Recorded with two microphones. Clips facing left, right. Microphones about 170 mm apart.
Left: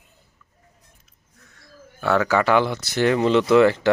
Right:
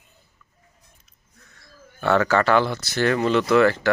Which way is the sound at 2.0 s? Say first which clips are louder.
Even; 5° left (ahead or behind).